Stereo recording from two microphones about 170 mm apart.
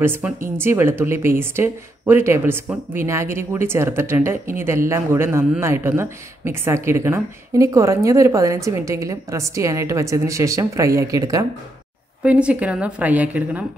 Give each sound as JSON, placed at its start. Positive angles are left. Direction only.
{"t": 0.0, "sound": "speech", "side_deg": -15}
{"t": 12.2, "sound": "speech", "side_deg": -5}